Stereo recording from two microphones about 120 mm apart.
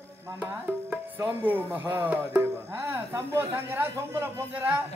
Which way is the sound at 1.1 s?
15° right (ahead or behind).